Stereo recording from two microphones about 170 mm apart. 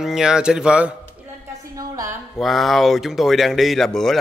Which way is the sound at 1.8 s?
20° right (ahead or behind).